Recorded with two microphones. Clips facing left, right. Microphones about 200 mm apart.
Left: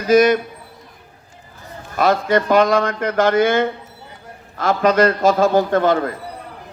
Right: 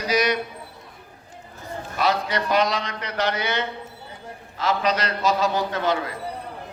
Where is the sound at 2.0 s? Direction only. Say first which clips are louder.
Left 8 dB; 50° left (ahead or behind).